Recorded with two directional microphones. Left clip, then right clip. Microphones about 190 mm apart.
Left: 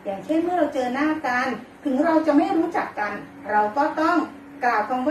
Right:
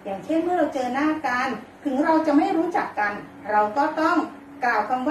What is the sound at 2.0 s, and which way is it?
A woman's voice, 10° right (ahead or behind).